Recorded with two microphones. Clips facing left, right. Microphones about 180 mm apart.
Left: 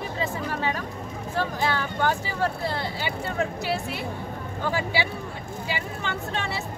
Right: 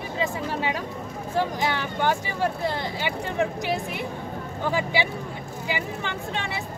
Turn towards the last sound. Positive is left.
turn(degrees=-15)  # may be behind; listen again after turning